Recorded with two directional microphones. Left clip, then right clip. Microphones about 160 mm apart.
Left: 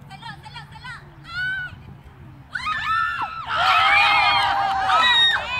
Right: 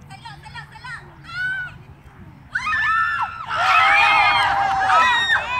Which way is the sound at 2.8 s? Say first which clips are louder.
Right 3 dB; 20° left (ahead or behind).